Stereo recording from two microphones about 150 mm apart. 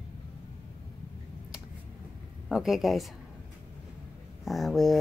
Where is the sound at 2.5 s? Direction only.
5° right (ahead or behind).